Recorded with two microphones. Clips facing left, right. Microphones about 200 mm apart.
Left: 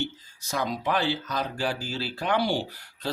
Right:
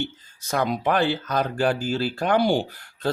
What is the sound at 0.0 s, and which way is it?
Speech, 55° right (ahead or behind).